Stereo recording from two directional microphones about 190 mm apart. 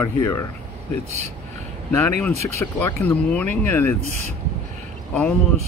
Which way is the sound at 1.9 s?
15° left (ahead or behind).